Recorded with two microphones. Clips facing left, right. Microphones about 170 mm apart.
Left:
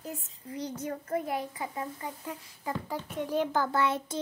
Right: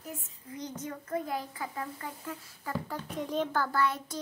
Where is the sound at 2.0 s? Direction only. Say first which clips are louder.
Left 2 dB; 15° left (ahead or behind).